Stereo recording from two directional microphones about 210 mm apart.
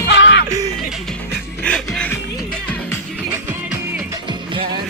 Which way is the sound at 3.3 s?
10° right (ahead or behind).